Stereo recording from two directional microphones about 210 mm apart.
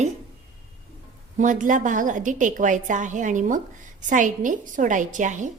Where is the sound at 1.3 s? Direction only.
35° right (ahead or behind).